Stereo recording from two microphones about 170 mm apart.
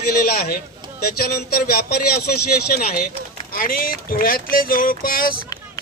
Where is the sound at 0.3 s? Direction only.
60° left (ahead or behind).